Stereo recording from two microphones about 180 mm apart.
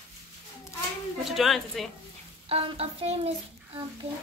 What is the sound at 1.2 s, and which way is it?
Speech, centre (ahead or behind).